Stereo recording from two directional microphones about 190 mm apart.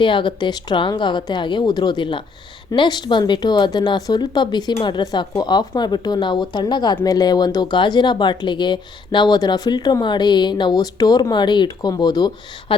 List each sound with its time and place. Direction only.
0.0 s a woman's voice: 25° left (ahead or behind)